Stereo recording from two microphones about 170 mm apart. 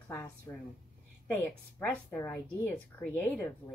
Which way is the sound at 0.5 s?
20° left (ahead or behind).